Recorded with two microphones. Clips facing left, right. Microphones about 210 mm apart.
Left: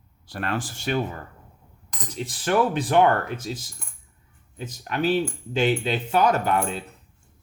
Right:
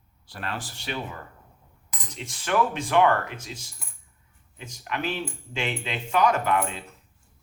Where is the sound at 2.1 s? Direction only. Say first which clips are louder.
Left 3 dB; 35° left (ahead or behind).